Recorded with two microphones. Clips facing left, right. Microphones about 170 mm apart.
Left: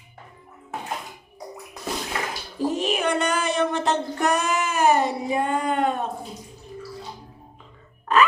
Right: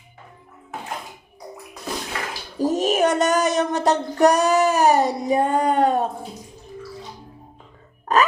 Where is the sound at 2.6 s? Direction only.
40° right (ahead or behind).